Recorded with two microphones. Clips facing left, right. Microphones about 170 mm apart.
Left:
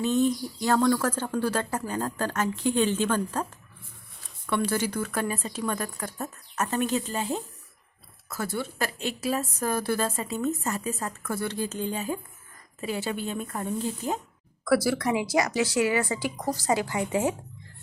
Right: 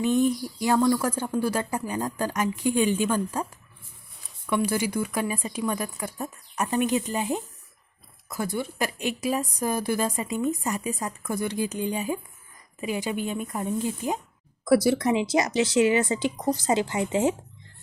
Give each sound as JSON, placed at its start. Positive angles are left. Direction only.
{"t": 0.0, "sound": "a woman's voice", "side_deg": -15}
{"t": 4.4, "sound": "a woman's voice", "side_deg": -10}